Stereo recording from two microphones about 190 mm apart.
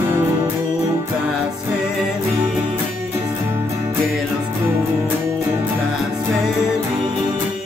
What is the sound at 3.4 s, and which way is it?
Music, 15° right (ahead or behind).